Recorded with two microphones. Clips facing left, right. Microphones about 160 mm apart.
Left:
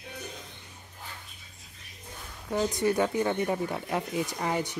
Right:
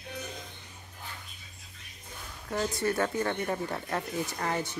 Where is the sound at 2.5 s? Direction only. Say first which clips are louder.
Left 3 dB; 15° left (ahead or behind).